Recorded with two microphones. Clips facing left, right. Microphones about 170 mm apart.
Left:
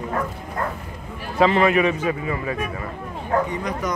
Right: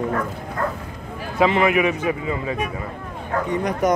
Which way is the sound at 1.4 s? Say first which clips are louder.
Even; 15° right (ahead or behind).